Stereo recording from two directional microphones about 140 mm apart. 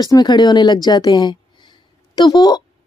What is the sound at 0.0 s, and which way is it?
A woman's voice, 30° left (ahead or behind).